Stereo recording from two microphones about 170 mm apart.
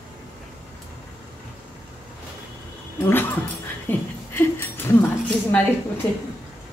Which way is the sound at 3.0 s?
10° left (ahead or behind).